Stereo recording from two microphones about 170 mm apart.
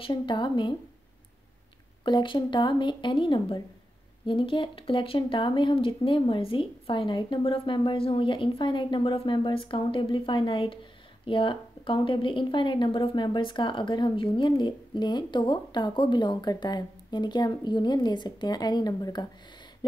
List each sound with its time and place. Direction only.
0.0 s a woman's voice: 30° left (ahead or behind)
2.0 s a woman's voice: 25° left (ahead or behind)